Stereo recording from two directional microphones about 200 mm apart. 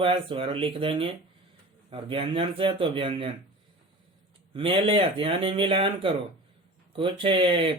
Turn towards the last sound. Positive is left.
turn(degrees=-25)  # may be behind; listen again after turning